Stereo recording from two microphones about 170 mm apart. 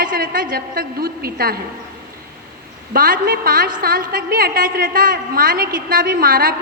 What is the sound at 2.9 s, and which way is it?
A woman's voice, 60° right (ahead or behind).